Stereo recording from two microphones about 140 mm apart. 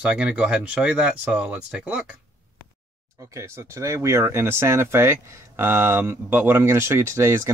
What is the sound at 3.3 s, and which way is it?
Speech, 20° right (ahead or behind).